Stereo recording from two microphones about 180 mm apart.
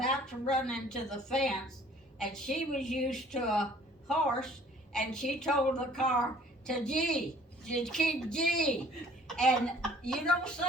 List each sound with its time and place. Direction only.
0.0 s a woman's voice: 5° left (ahead or behind)
9.2 s cough: 5° left (ahead or behind)
10.0 s a woman's voice: 5° left (ahead or behind)